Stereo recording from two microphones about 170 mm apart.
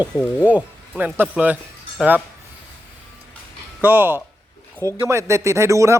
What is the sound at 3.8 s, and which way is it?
Speech, 10° right (ahead or behind).